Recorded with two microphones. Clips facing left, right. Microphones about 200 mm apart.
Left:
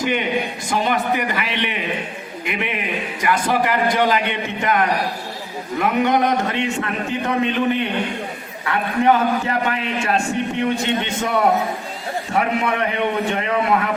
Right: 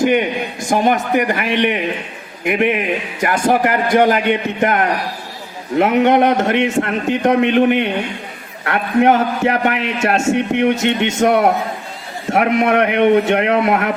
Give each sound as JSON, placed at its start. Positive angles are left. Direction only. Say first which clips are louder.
{"t": 0.0, "sound": "a man's voice", "louder": "right 5 dB", "side_deg": -50}
{"t": 5.8, "sound": "a man's voice", "louder": "right 5 dB", "side_deg": -75}